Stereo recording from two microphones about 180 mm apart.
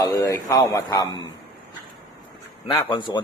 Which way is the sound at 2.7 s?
25° left (ahead or behind).